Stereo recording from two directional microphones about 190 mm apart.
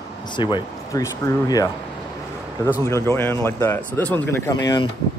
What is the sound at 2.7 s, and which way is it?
Speech, 15° left (ahead or behind).